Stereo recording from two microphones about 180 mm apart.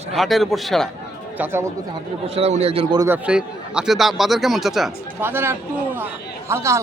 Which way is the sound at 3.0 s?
10° right (ahead or behind).